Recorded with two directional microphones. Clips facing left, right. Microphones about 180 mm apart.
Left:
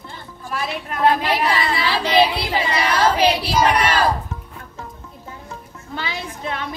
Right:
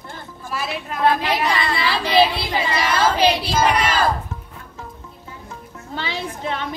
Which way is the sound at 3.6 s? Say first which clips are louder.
Left 1 dB; centre (ahead or behind).